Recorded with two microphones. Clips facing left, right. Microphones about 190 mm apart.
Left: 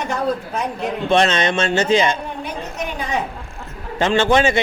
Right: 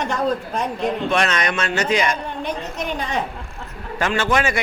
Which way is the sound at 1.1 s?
25° left (ahead or behind).